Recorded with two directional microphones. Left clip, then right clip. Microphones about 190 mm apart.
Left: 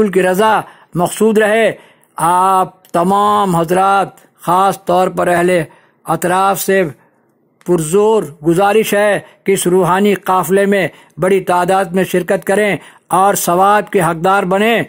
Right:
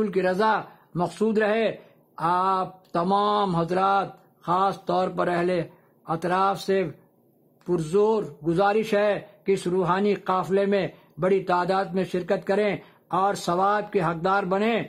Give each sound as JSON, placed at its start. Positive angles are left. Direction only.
{"t": 0.0, "sound": "a man's voice", "side_deg": 30}